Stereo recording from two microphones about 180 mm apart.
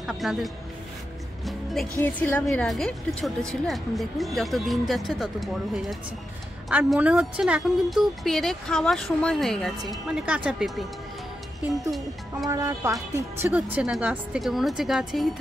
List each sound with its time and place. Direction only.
0.0 s speech: centre (ahead or behind)
1.4 s music: centre (ahead or behind)
2.0 s a woman's voice: 10° left (ahead or behind)
12.4 s a woman's voice: 15° right (ahead or behind); by 15.3 s centre (ahead or behind)